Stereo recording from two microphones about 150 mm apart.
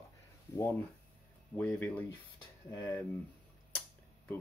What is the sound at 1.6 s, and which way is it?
Speech, 10° left (ahead or behind).